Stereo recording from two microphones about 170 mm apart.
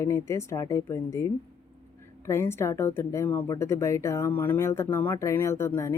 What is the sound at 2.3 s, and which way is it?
Speech, 15° left (ahead or behind).